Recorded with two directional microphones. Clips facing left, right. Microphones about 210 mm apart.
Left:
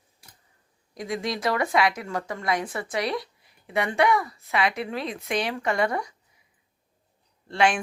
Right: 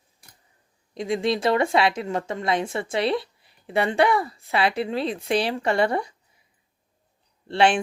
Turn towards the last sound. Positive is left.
turn(degrees=-30)  # may be behind; listen again after turning